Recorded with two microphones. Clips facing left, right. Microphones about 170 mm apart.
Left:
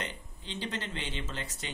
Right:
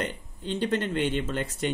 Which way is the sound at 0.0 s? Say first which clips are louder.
Right 8 dB; 55° right (ahead or behind).